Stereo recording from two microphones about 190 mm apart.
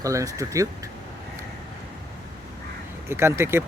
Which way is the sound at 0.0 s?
15° right (ahead or behind).